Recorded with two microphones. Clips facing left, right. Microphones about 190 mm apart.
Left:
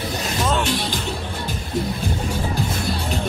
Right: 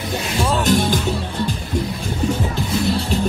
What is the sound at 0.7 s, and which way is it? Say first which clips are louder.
Music: right 7 dB; 45° right (ahead or behind).